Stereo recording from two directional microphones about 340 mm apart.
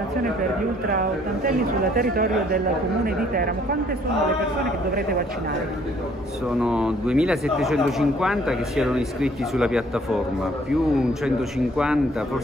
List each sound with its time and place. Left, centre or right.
2.0 s speech: right
6.6 s speech: centre
11.2 s speech: centre